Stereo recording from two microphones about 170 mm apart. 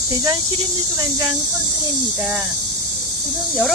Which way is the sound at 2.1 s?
5° right (ahead or behind).